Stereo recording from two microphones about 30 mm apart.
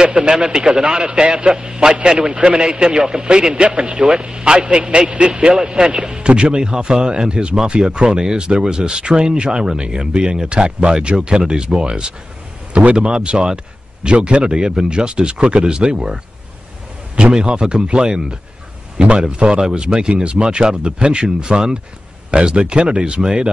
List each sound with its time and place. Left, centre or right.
0.0 s speech: right
14.0 s speech: right
17.5 s speech: right
18.9 s speech: right
23.2 s speech: right